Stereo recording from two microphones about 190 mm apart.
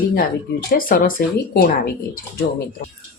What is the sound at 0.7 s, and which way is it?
Speech, 50° left (ahead or behind).